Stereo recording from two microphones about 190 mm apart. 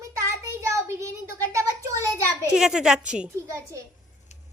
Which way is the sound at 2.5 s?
5° right (ahead or behind).